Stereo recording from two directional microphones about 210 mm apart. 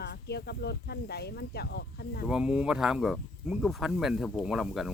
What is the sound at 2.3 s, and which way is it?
Speech, 5° right (ahead or behind).